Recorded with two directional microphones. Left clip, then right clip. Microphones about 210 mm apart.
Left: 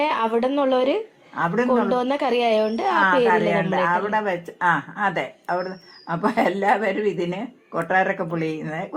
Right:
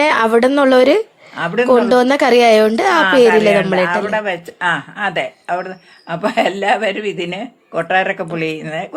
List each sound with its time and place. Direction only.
0.0 s a woman's voice: 45° right (ahead or behind)
4.1 s speech: 25° right (ahead or behind)